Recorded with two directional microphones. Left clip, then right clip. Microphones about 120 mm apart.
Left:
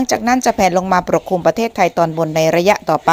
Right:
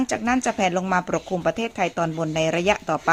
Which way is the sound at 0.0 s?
25° left (ahead or behind).